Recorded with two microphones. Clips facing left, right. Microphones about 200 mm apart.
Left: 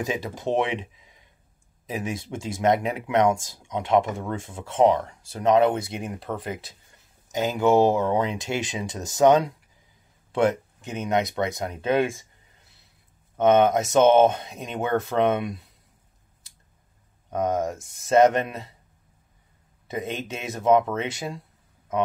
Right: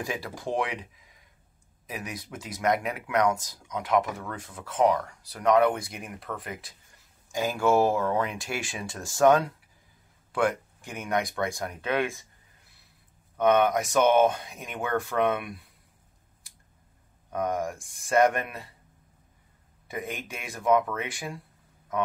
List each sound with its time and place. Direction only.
0.0 s speech: 20° left (ahead or behind)
13.4 s speech: 25° left (ahead or behind)
17.3 s speech: 20° left (ahead or behind)
19.9 s speech: 25° left (ahead or behind)